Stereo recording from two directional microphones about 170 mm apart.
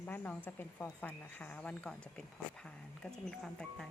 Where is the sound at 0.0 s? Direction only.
10° left (ahead or behind).